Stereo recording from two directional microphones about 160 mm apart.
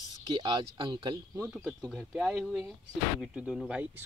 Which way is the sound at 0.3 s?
30° right (ahead or behind).